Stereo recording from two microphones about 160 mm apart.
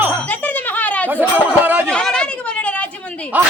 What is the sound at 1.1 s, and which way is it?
Speech, 10° right (ahead or behind).